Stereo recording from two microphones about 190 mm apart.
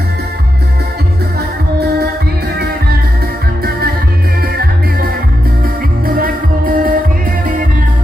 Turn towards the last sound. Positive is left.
turn(degrees=-45)  # may be behind; listen again after turning